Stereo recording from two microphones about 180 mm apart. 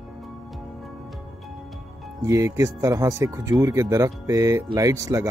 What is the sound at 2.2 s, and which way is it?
Speech, 15° right (ahead or behind).